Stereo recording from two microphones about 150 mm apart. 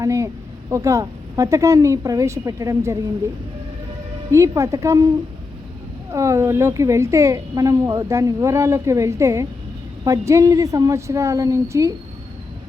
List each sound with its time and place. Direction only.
0.0 s a sound: 20° right (ahead or behind)
0.7 s a woman's voice: 20° right (ahead or behind)
4.3 s a woman's voice: 20° right (ahead or behind)
6.1 s a woman's voice: 20° right (ahead or behind)